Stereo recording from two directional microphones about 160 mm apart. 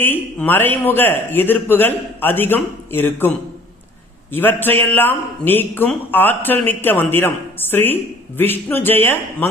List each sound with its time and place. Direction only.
0.0 s a man's voice: 10° left (ahead or behind)